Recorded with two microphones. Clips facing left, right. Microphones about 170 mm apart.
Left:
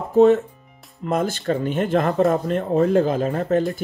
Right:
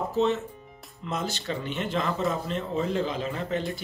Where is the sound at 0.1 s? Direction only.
50° left (ahead or behind).